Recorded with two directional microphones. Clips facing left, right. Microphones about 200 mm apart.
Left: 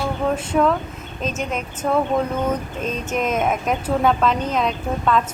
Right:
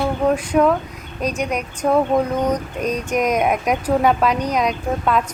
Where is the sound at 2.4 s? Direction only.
15° right (ahead or behind).